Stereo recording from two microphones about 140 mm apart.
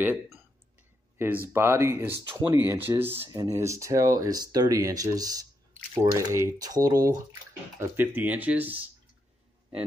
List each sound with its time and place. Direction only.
0.0 s speech: 15° right (ahead or behind)
1.1 s a sound: 15° right (ahead or behind)
1.5 s speech: 20° right (ahead or behind)
7.9 s speech: 15° right (ahead or behind)